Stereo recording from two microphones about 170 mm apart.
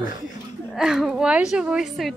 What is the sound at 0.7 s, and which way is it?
Speech, 5° right (ahead or behind).